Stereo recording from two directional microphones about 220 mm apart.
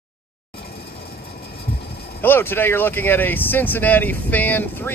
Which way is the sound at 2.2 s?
10° left (ahead or behind).